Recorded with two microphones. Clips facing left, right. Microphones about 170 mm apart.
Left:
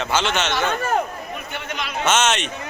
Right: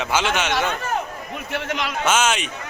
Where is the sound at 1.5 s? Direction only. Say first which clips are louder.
Right 7 dB; 90° right.